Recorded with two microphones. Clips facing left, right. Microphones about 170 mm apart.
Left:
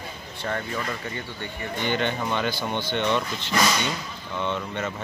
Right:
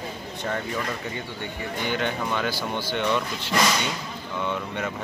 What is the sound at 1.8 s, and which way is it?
Speech, 5° right (ahead or behind).